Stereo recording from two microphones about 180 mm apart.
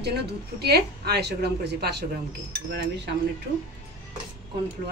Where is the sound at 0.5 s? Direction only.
60° right (ahead or behind).